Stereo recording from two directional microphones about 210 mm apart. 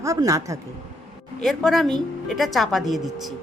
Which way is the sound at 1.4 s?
Centre (ahead or behind).